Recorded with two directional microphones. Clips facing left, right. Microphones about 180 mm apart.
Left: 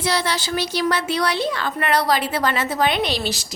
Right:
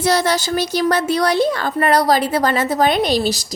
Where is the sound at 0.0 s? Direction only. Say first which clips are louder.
Right 6 dB; 45° right (ahead or behind).